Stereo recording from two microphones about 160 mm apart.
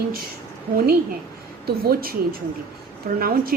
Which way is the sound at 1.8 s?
70° right (ahead or behind).